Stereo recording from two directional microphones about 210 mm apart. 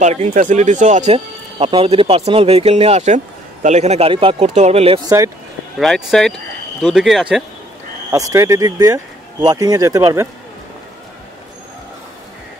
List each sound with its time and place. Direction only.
0.0 s speech: 35° right (ahead or behind)
5.8 s speech: centre (ahead or behind)
8.1 s speech: 15° right (ahead or behind)